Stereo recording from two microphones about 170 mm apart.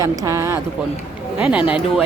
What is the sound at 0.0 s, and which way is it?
Speech, 20° right (ahead or behind).